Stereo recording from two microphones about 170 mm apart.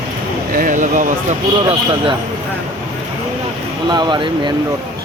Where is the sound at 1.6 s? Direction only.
30° right (ahead or behind).